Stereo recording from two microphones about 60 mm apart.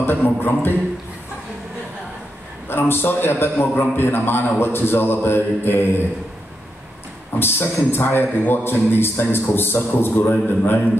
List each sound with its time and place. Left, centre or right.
0.0 s a man's voice: left
2.7 s a man's voice: left
7.3 s a man's voice: left